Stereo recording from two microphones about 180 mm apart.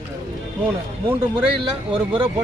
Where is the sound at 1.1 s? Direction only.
10° right (ahead or behind).